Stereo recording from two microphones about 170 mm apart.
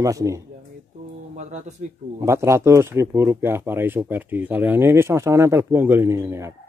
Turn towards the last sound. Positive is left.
turn(degrees=-15)  # may be behind; listen again after turning